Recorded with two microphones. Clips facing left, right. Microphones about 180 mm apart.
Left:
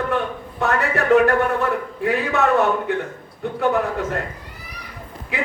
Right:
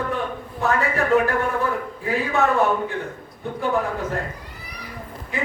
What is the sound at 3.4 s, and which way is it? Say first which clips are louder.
Speech: left 3 dB; 70° left (ahead or behind).